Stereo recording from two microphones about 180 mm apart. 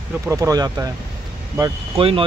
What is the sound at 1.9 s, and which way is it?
Speech, 30° right (ahead or behind).